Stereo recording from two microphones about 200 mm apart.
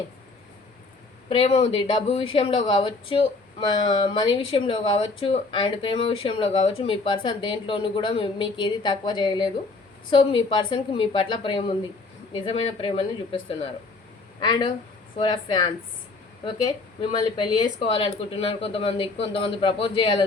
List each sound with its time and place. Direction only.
1.3 s speech: 30° left (ahead or behind)